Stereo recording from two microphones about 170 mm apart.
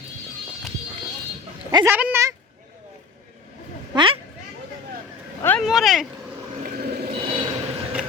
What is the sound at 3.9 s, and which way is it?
Speech, 30° right (ahead or behind).